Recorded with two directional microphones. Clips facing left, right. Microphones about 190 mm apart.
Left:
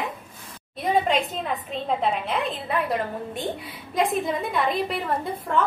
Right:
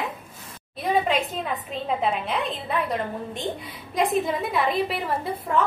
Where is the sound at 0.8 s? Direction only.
Centre (ahead or behind).